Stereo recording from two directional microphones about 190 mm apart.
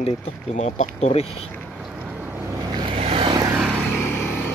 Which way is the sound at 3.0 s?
30° right (ahead or behind).